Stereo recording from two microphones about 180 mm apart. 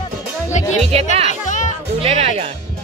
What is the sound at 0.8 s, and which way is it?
Speech, 35° right (ahead or behind).